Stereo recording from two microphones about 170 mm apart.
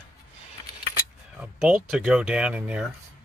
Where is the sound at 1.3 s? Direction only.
5° right (ahead or behind).